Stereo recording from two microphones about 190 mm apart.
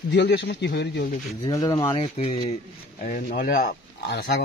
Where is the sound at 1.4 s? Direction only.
20° left (ahead or behind).